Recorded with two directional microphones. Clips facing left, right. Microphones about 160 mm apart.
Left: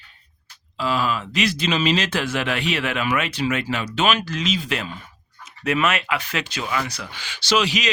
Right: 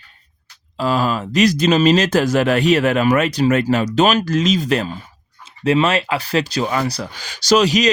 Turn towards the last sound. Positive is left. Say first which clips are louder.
# right 7 dB
turn(degrees=-40)  # may be behind; listen again after turning